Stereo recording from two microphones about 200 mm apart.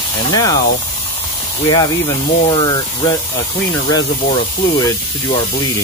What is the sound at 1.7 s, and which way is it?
Speech, 20° left (ahead or behind).